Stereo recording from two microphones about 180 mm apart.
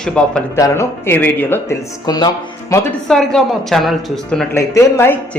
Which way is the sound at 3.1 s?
Centre (ahead or behind).